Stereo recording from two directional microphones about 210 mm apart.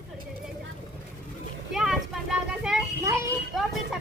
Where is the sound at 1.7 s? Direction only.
Centre (ahead or behind).